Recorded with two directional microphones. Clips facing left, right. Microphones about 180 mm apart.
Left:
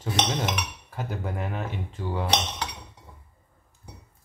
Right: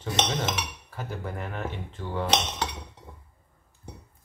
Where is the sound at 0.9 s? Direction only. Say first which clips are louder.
Left 3 dB; 15° left (ahead or behind).